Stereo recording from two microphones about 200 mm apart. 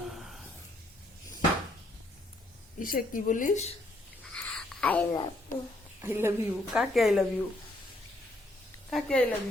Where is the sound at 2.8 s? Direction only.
45° left (ahead or behind).